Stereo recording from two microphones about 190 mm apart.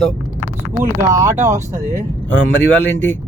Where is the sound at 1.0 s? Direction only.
15° right (ahead or behind).